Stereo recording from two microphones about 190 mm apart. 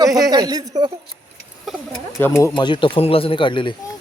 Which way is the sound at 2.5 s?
25° left (ahead or behind).